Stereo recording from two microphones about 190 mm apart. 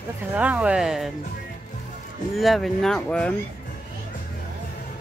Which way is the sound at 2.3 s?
Centre (ahead or behind).